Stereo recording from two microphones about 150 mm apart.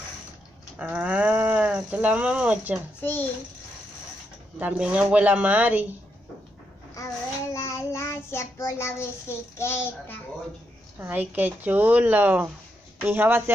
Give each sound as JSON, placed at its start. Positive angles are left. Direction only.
{"t": 0.7, "sound": "speech", "side_deg": -10}
{"t": 3.0, "sound": "child singing", "side_deg": 15}
{"t": 4.6, "sound": "speech", "side_deg": -10}
{"t": 7.5, "sound": "child singing", "side_deg": 20}
{"t": 11.0, "sound": "speech", "side_deg": -10}